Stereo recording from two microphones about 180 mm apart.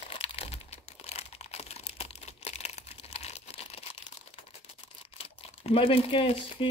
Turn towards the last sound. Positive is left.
turn(degrees=30)  # may be behind; listen again after turning